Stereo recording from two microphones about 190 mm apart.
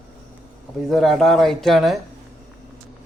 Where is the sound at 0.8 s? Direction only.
Centre (ahead or behind).